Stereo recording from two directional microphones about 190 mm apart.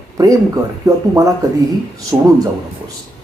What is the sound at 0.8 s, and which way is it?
Speech, 15° right (ahead or behind).